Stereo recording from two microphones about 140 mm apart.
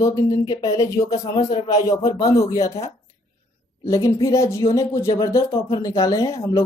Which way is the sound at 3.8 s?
20° left (ahead or behind).